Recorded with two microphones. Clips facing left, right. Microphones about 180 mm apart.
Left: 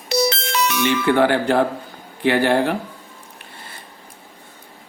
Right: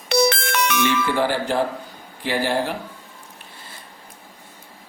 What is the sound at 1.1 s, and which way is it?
Speech, 60° left (ahead or behind).